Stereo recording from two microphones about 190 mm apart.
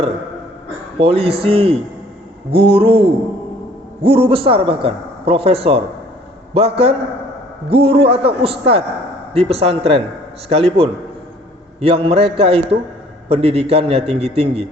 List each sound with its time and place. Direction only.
0.9 s a man's voice: 30° right (ahead or behind)